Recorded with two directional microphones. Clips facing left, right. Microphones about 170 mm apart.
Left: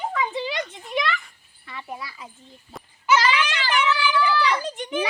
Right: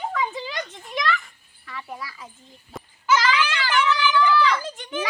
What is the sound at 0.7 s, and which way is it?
A child's voice, 15° left (ahead or behind).